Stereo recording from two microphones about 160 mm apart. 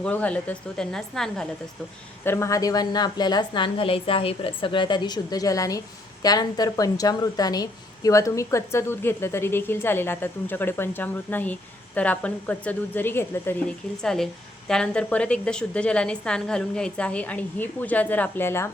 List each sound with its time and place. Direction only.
0.0 s speech: 10° left (ahead or behind)
2.2 s a woman's voice: 15° left (ahead or behind)
14.0 s a woman's voice: 5° left (ahead or behind)